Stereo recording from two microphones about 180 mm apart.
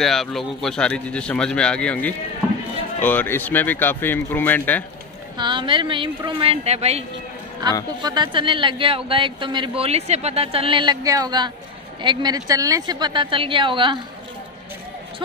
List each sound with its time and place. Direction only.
0.0 s speech: centre (ahead or behind)
5.4 s speech: 25° right (ahead or behind)